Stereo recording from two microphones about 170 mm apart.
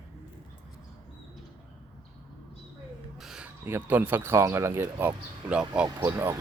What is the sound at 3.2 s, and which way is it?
Speech, 5° right (ahead or behind).